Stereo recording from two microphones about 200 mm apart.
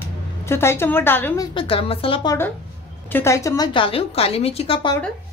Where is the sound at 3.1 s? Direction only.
10° left (ahead or behind); by 4.9 s 25° left (ahead or behind).